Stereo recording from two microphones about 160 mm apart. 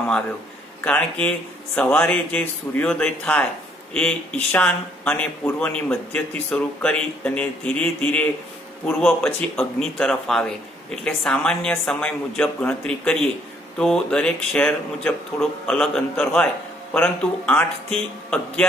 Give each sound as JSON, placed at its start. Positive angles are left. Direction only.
{"t": 0.8, "sound": "a woman's voice", "side_deg": 10}